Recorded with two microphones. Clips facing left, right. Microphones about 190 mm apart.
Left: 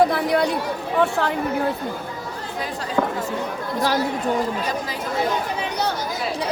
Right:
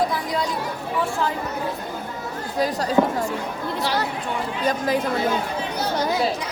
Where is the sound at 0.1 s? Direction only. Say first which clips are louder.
Left 5 dB; 65° left (ahead or behind).